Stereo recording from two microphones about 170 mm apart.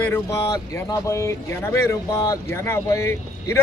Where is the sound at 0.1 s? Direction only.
20° left (ahead or behind).